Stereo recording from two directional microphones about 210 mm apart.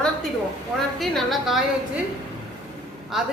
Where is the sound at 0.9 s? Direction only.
Centre (ahead or behind).